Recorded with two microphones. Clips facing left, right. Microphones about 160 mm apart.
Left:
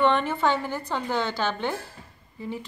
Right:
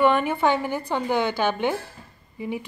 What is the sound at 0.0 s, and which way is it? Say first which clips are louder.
A woman's voice: right 2 dB; 10° right (ahead or behind).